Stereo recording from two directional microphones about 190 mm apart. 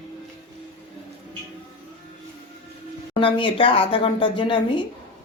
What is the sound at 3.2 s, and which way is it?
Speech, 25° left (ahead or behind).